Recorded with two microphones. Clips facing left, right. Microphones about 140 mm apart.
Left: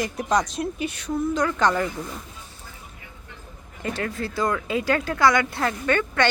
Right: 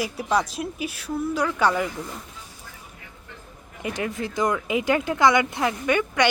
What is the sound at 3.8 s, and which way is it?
A woman's voice, 15° right (ahead or behind).